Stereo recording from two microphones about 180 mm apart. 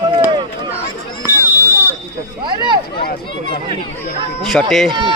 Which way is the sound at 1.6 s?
15° left (ahead or behind).